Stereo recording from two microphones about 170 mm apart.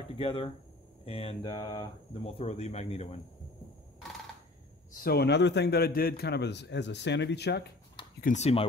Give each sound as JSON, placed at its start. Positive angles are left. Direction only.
{"t": 0.2, "sound": "speech", "side_deg": 35}
{"t": 5.0, "sound": "a man's voice", "side_deg": 70}
{"t": 8.2, "sound": "speech", "side_deg": 45}